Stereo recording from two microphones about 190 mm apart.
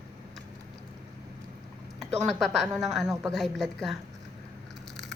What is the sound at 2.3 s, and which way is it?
A woman's voice, 5° left (ahead or behind).